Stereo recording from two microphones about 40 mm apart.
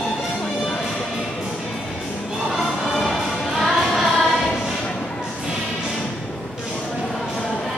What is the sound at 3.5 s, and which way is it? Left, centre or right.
Music, centre.